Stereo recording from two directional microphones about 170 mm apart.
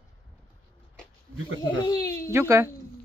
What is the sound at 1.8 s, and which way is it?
Speech, 20° left (ahead or behind).